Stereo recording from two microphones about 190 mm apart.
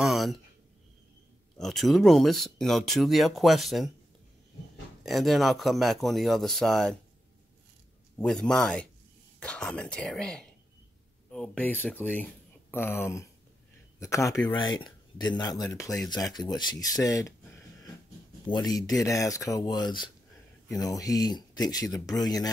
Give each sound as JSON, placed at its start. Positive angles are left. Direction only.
{"t": 0.0, "sound": "a sound", "side_deg": 0}
{"t": 1.6, "sound": "speech", "side_deg": 0}
{"t": 5.0, "sound": "speech", "side_deg": 0}
{"t": 8.2, "sound": "speech", "side_deg": 5}
{"t": 18.5, "sound": "speech", "side_deg": 20}